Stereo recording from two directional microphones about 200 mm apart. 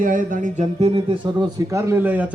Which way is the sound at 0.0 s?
40° right (ahead or behind).